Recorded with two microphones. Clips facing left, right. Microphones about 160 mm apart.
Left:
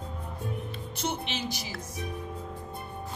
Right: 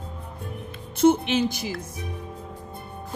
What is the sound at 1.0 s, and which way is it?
Speech, 50° right (ahead or behind).